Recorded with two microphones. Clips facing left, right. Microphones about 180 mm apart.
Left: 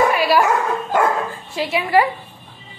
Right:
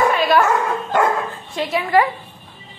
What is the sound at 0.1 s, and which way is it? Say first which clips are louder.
Speech: even; 10° left (ahead or behind).